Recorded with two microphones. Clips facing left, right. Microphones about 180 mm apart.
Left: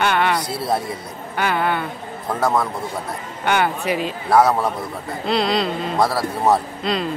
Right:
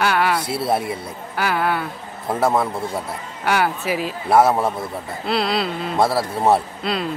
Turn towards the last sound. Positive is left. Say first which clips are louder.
# left 1 dB
turn(degrees=-5)  # may be behind; listen again after turning